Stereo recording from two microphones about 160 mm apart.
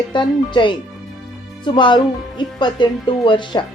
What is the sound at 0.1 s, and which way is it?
Speech, 30° left (ahead or behind).